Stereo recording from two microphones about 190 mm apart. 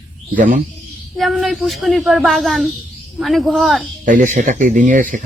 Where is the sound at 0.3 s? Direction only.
45° right (ahead or behind).